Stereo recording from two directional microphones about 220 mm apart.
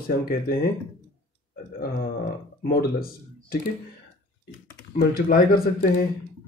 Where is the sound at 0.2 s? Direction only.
40° left (ahead or behind).